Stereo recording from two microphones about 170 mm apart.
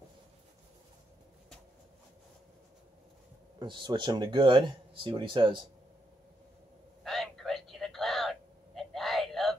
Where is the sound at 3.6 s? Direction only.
25° right (ahead or behind).